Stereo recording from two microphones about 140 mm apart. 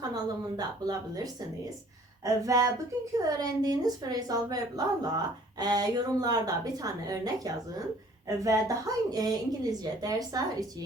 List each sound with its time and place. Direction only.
0.1 s speech: 30° right (ahead or behind)